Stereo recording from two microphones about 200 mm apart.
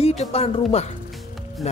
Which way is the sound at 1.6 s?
35° left (ahead or behind).